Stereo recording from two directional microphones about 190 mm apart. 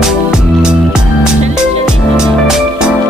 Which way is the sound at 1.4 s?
35° right (ahead or behind).